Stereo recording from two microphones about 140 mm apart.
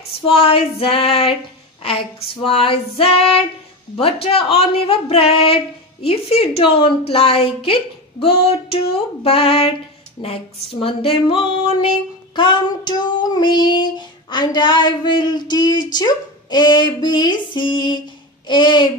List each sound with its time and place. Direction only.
0.3 s a woman's voice: 40° left (ahead or behind)
1.8 s child singing: 40° left (ahead or behind)
3.9 s a woman's voice: 45° left (ahead or behind)
10.2 s child singing: 40° left (ahead or behind)